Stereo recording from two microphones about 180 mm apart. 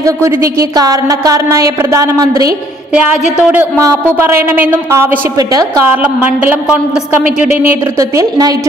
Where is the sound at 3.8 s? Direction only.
15° right (ahead or behind).